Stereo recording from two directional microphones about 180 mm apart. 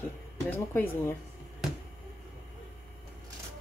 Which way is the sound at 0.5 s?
10° left (ahead or behind).